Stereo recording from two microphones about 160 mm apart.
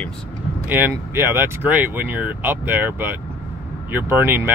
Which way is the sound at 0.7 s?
10° right (ahead or behind).